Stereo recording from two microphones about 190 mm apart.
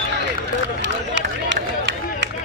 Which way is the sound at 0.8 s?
70° right (ahead or behind).